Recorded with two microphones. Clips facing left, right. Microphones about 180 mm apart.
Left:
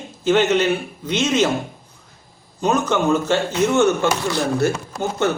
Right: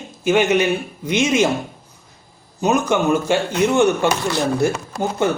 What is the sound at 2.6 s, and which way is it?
A man's voice, 10° right (ahead or behind).